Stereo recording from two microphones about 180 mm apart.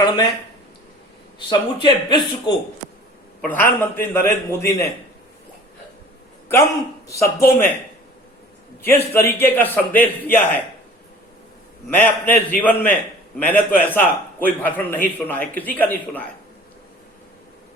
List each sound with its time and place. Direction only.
1.5 s speech: 25° left (ahead or behind)
3.4 s a man's voice: 10° left (ahead or behind)
7.1 s a man's voice: 15° left (ahead or behind)
8.8 s a man's voice: 10° left (ahead or behind)
11.9 s a man's voice: 10° left (ahead or behind)